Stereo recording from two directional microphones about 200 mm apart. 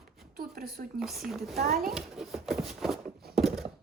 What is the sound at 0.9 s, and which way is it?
Speech, centre (ahead or behind).